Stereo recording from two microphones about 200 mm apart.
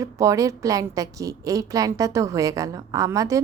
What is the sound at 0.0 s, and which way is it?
A woman's voice, 15° right (ahead or behind).